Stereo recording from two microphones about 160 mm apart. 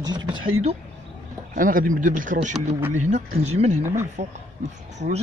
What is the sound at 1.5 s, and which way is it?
Speech, 55° right (ahead or behind).